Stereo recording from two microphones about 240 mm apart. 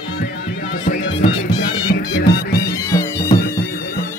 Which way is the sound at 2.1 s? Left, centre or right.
Left.